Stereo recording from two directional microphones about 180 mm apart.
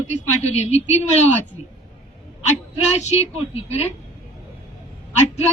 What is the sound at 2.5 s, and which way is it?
Speech, 40° left (ahead or behind).